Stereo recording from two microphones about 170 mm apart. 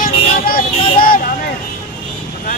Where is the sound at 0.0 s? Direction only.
55° left (ahead or behind).